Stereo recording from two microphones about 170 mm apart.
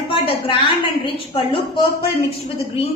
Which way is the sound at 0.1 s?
30° left (ahead or behind).